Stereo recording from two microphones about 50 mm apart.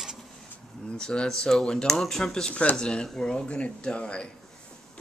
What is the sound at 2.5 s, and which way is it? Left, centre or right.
Speech, left.